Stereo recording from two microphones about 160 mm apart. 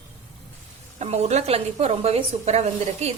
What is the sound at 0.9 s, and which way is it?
A woman's voice, 45° right (ahead or behind).